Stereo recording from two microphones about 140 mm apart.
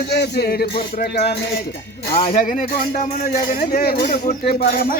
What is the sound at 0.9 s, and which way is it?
Speech, 90° left.